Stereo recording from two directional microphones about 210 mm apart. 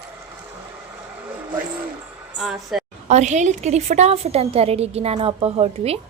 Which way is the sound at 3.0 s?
35° right (ahead or behind).